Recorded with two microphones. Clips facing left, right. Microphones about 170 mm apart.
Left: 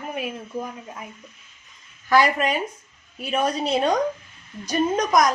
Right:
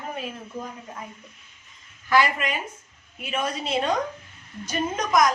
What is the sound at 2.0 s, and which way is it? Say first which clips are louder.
A woman's voice: left 3 dB; 40° left (ahead or behind).